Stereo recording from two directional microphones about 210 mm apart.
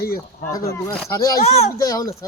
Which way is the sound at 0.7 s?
10° left (ahead or behind).